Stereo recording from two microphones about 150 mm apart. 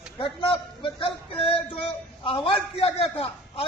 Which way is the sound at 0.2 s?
35° left (ahead or behind).